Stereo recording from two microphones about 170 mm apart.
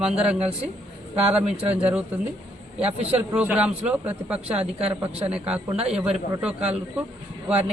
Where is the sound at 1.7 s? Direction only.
10° right (ahead or behind).